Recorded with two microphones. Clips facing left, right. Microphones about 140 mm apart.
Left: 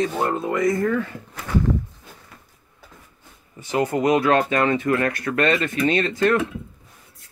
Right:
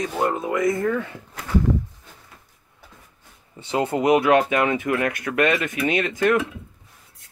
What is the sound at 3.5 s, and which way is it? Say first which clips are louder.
Speech: left 1 dB; 25° right (ahead or behind).